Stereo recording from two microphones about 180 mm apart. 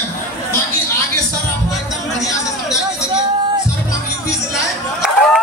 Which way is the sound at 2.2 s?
20° left (ahead or behind).